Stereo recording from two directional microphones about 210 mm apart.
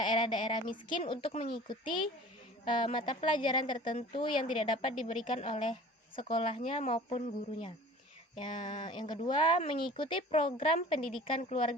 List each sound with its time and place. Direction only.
0.0 s speech: 20° left (ahead or behind)